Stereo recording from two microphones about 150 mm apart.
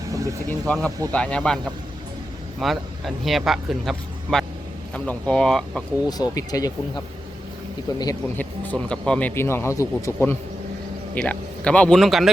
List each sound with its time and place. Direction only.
0.6 s a man's voice: 5° left (ahead or behind)
2.6 s a man's voice: centre (ahead or behind)
6.1 s speech: 25° left (ahead or behind)
8.4 s a man's voice: 10° left (ahead or behind)